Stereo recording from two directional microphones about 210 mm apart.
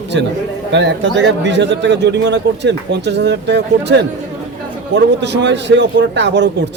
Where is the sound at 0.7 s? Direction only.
55° right (ahead or behind).